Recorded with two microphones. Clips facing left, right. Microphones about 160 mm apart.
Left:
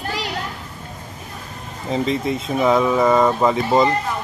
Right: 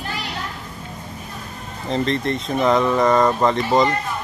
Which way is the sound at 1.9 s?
5° left (ahead or behind).